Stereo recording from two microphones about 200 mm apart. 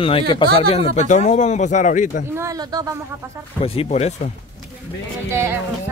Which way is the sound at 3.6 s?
30° left (ahead or behind).